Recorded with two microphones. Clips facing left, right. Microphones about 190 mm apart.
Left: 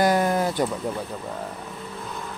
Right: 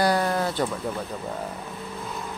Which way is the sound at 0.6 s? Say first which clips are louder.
Left 1 dB; 5° left (ahead or behind).